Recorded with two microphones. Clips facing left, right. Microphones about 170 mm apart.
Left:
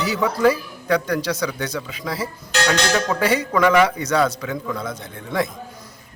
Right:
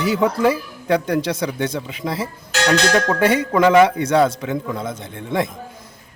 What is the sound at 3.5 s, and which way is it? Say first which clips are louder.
A man's voice: right 4 dB; 25° right (ahead or behind).